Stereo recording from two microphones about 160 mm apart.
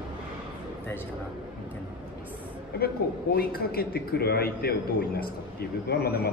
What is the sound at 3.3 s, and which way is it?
A man's voice, 75° left (ahead or behind).